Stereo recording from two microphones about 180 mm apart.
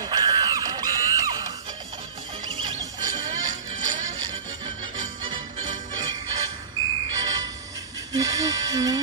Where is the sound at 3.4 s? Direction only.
45° right (ahead or behind).